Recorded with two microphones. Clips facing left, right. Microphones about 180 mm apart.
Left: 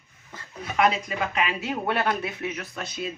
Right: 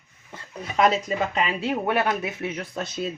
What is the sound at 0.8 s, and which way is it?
Speech, 35° right (ahead or behind).